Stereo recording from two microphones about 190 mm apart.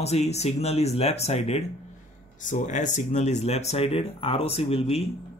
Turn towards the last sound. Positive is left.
turn(degrees=30)  # may be behind; listen again after turning